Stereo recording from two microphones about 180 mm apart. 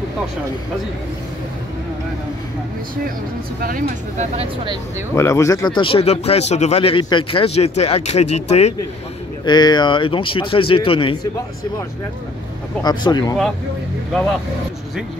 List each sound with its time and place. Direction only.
3.6 s speech: 55° right (ahead or behind)
5.1 s speech: 15° left (ahead or behind); by 8.7 s 35° left (ahead or behind)
9.4 s speech: 25° left (ahead or behind)
12.8 s speech: 25° left (ahead or behind)